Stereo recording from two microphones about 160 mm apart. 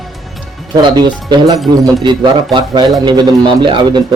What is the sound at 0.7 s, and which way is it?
Speech, 25° right (ahead or behind).